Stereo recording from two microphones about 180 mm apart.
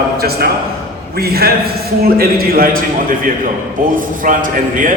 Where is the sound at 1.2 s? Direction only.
60° right (ahead or behind).